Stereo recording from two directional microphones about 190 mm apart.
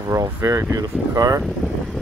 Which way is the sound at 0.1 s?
20° right (ahead or behind).